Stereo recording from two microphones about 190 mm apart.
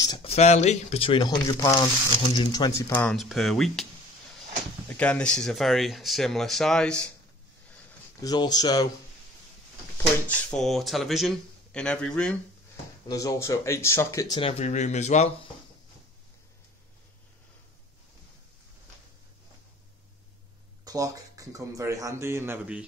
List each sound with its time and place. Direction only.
0.0 s speech: 25° left (ahead or behind)
2.9 s speech: 5° left (ahead or behind)
4.8 s speech: 5° left (ahead or behind)
8.2 s speech: 20° left (ahead or behind)
10.2 s speech: 5° left (ahead or behind)
13.1 s speech: 15° left (ahead or behind)
14.6 s speech: 40° left (ahead or behind)
20.8 s speech: 20° right (ahead or behind)